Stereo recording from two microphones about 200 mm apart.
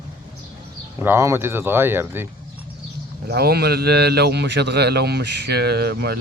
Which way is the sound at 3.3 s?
50° right (ahead or behind).